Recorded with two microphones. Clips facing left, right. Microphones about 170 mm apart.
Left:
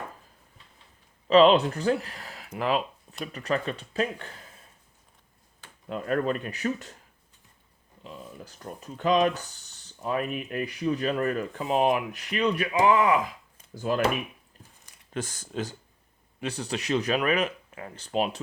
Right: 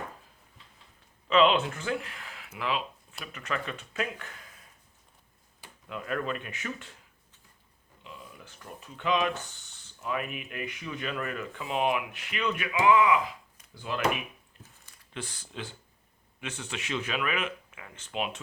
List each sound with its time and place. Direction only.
1.3 s speech: 35° left (ahead or behind)
5.9 s speech: 40° left (ahead or behind)
8.0 s speech: 40° left (ahead or behind)
15.1 s speech: 45° left (ahead or behind)